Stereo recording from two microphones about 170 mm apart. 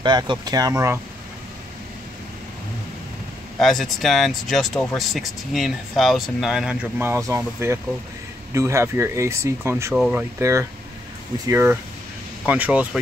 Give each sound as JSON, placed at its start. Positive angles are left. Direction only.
{"t": 0.0, "sound": "speech", "side_deg": -25}
{"t": 3.5, "sound": "speech", "side_deg": 0}
{"t": 9.9, "sound": "speech", "side_deg": -5}
{"t": 10.4, "sound": "speech", "side_deg": -15}